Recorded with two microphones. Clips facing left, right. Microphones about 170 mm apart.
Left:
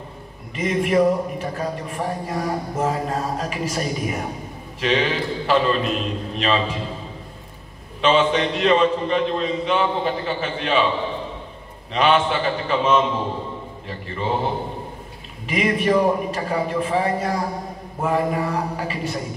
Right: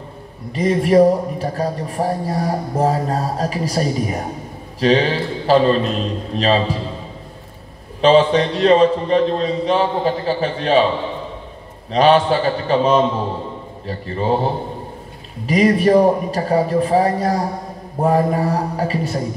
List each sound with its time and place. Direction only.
0.6 s a man's voice: 35° right (ahead or behind)
8.0 s a man's voice: 35° right (ahead or behind)
11.9 s a man's voice: 35° right (ahead or behind)